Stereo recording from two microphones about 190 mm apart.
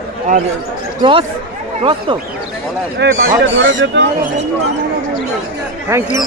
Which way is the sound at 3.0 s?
65° right (ahead or behind).